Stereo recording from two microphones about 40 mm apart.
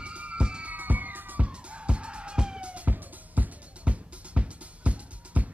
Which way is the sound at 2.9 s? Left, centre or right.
Right.